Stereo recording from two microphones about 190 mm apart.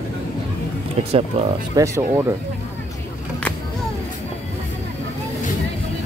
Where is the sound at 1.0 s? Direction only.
30° right (ahead or behind).